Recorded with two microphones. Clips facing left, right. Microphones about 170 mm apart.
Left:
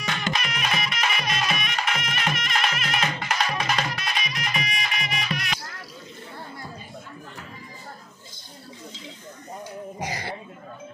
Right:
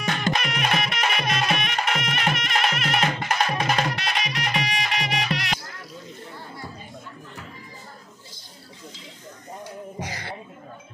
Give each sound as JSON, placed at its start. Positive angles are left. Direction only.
{"t": 0.0, "sound": "music", "side_deg": -50}
{"t": 3.9, "sound": "music", "side_deg": -70}
{"t": 9.9, "sound": "a sound", "side_deg": 15}